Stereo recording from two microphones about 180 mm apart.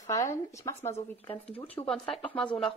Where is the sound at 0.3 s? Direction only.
15° left (ahead or behind).